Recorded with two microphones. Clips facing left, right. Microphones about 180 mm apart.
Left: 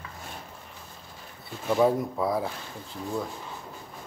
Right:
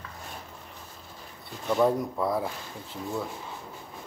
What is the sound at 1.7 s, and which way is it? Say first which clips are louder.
Speech: left 1 dB; 5° left (ahead or behind).